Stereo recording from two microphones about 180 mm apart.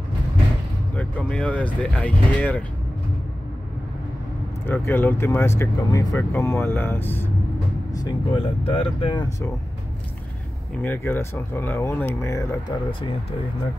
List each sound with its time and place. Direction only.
0.9 s speech: 5° left (ahead or behind)
4.6 s speech: 10° left (ahead or behind)
7.9 s speech: 20° left (ahead or behind)
10.8 s speech: 10° left (ahead or behind)